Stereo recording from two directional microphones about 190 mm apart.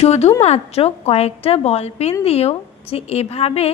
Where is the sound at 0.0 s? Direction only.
35° left (ahead or behind).